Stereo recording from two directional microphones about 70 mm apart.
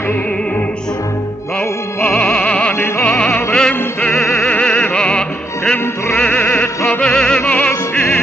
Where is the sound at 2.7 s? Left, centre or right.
Left.